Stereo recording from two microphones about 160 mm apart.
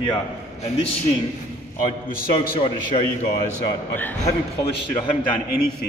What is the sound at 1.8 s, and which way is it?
Speech, 60° left (ahead or behind).